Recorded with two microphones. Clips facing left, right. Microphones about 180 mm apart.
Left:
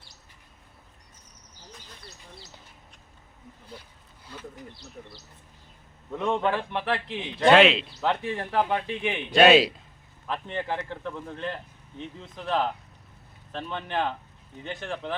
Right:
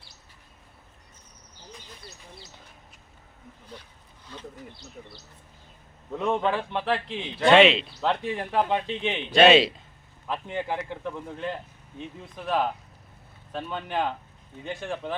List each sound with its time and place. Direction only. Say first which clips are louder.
4.3 s a sound: even; 10° left (ahead or behind)
6.1 s speech: even; 15° right (ahead or behind)
7.1 s speech: even; 15° left (ahead or behind)
7.4 s a man's voice: even; centre (ahead or behind)
8.1 s a man's voice: right 1 dB; 15° right (ahead or behind)
9.3 s a man's voice: even; centre (ahead or behind)
10.2 s speech: right 1 dB; 15° right (ahead or behind)